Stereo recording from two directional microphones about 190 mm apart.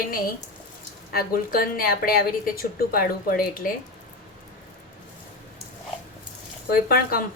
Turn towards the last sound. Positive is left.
turn(degrees=50)  # may be behind; listen again after turning